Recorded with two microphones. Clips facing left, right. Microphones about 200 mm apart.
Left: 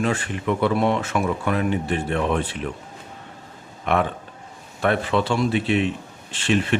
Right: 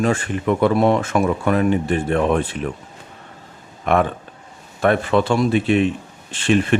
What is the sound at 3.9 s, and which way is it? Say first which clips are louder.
A man's voice: right 4 dB; 45° right (ahead or behind).